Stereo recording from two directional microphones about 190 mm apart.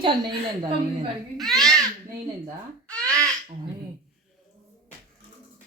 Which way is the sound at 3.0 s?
15° right (ahead or behind).